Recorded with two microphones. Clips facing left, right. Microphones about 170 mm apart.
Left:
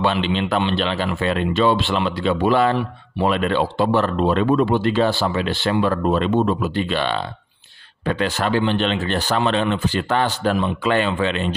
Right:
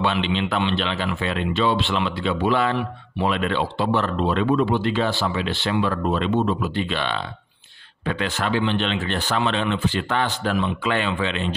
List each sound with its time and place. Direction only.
0.0 s speech: 45° left (ahead or behind)